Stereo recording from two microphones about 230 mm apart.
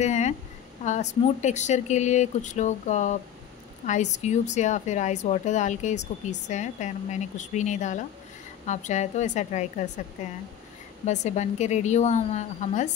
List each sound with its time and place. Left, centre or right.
0.0 s a sound: left
0.8 s a woman's voice: left
11.1 s a woman's voice: left